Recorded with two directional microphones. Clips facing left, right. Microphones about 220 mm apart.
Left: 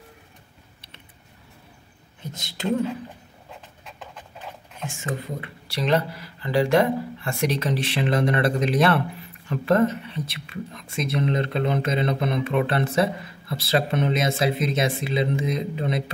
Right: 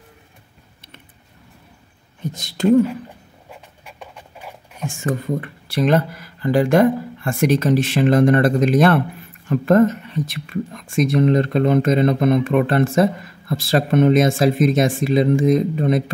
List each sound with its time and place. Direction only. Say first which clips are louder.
2.3 s speech: right 10 dB; 45° right (ahead or behind)
4.0 s a sound: right 2 dB; 10° right (ahead or behind)
4.8 s speech: right 8 dB; 45° right (ahead or behind)